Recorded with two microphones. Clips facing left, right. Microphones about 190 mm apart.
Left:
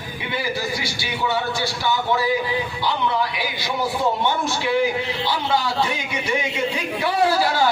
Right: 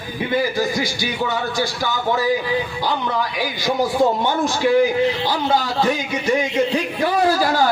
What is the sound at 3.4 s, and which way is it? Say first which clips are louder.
A man's voice: right 5 dB; 45° right (ahead or behind).